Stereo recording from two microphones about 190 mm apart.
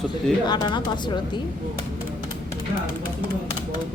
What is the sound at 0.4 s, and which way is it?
Speech, 25° left (ahead or behind).